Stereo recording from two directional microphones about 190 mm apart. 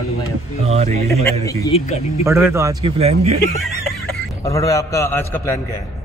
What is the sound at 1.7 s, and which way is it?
Speech, 35° left (ahead or behind).